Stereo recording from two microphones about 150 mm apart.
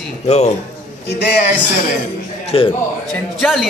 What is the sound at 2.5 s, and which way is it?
Speech, 40° left (ahead or behind).